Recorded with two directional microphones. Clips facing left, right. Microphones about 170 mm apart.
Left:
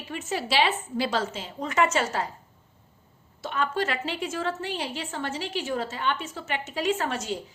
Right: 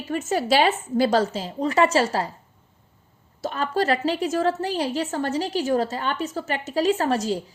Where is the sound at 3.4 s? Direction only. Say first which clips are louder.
Right 4 dB; 40° right (ahead or behind).